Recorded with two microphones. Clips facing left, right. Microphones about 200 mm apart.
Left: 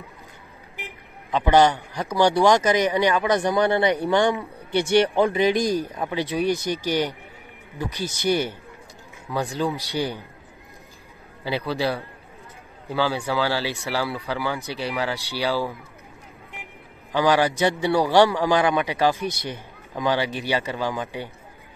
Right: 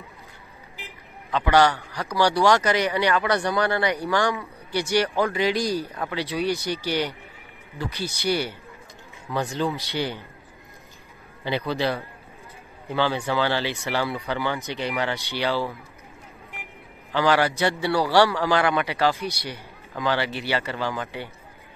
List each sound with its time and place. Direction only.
1.3 s a man's voice: 20° left (ahead or behind)
7.8 s a man's voice: 15° left (ahead or behind)
9.5 s speech: centre (ahead or behind)
9.9 s a man's voice: 15° left (ahead or behind)
11.4 s a man's voice: 5° left (ahead or behind)
17.1 s a man's voice: 15° left (ahead or behind)
19.2 s a man's voice: 50° left (ahead or behind)
19.9 s a man's voice: 15° left (ahead or behind)